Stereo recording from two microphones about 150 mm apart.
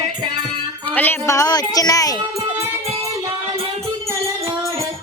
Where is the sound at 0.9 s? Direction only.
15° left (ahead or behind).